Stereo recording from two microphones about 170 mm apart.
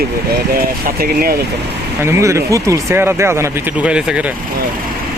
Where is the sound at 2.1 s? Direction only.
15° right (ahead or behind).